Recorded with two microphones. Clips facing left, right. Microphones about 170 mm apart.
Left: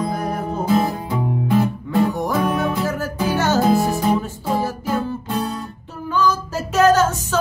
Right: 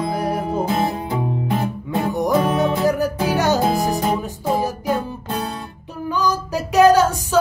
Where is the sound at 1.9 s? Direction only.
20° right (ahead or behind).